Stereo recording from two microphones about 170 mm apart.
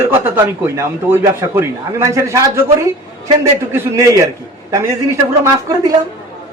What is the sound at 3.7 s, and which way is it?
Speech, 20° right (ahead or behind).